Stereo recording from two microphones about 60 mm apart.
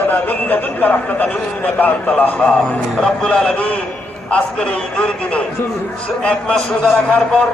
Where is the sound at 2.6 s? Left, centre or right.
Centre.